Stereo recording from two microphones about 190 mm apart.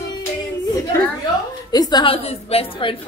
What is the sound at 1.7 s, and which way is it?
A woman's voice, 20° left (ahead or behind).